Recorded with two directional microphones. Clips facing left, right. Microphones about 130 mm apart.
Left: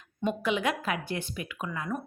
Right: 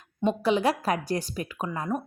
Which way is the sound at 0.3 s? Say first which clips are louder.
Right 5 dB; 35° right (ahead or behind).